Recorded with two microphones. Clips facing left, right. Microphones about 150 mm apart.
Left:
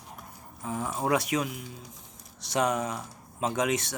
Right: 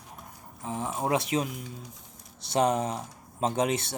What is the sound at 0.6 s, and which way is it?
Speech, 25° right (ahead or behind).